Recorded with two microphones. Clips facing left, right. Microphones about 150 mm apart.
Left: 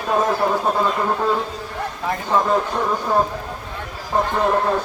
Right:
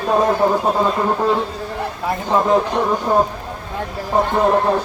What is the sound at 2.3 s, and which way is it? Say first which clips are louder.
Speech: right 3 dB; 15° right (ahead or behind).